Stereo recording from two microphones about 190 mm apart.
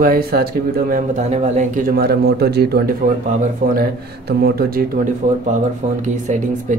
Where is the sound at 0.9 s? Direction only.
40° right (ahead or behind); by 4.8 s 55° right (ahead or behind).